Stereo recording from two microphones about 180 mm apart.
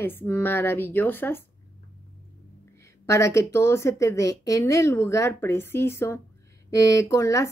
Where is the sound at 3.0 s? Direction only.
15° left (ahead or behind).